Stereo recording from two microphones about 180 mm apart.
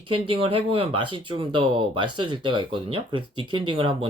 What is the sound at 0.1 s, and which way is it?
Speech, 30° right (ahead or behind).